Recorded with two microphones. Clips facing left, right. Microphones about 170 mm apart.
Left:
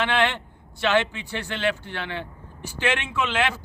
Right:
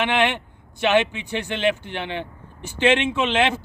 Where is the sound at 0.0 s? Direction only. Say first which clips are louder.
Right 2 dB; 20° right (ahead or behind).